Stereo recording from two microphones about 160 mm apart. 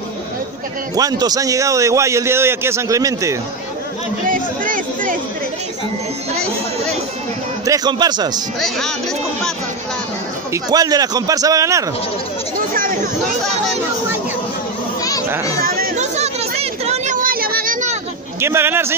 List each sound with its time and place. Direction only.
0.9 s a man's voice: 25° right (ahead or behind)
4.3 s a sound: 55° right (ahead or behind)
7.6 s a man's voice: 25° right (ahead or behind)
8.5 s speech: centre (ahead or behind)
10.5 s a man's voice: 25° right (ahead or behind)
12.7 s a sound: 60° right (ahead or behind)
15.0 s children playing: 20° left (ahead or behind)
15.6 s chatter: 65° right (ahead or behind)
16.0 s a sound: 45° right (ahead or behind)
18.4 s speech: 15° right (ahead or behind)